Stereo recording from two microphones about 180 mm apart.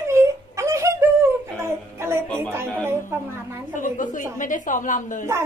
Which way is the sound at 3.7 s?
45° left (ahead or behind).